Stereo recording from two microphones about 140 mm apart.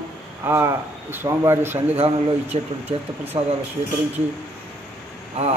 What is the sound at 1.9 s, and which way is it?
Speech, 45° right (ahead or behind).